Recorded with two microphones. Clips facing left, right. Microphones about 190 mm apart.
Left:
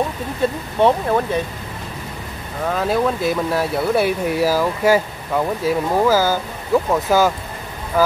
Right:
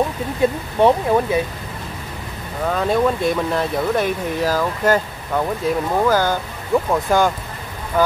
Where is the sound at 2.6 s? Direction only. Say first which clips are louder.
Right 1 dB; centre (ahead or behind).